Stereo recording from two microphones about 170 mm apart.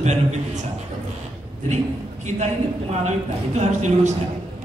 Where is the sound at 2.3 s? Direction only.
45° right (ahead or behind).